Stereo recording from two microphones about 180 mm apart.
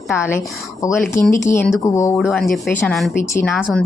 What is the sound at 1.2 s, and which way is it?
Speech, 45° left (ahead or behind).